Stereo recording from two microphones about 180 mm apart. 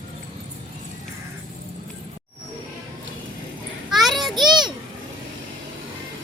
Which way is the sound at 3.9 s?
Centre (ahead or behind).